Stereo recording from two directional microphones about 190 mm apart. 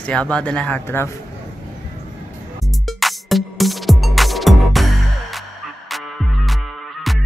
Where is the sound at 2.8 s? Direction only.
Centre (ahead or behind).